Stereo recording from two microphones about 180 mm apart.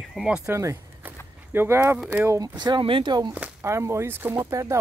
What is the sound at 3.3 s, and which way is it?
Speech, 10° right (ahead or behind).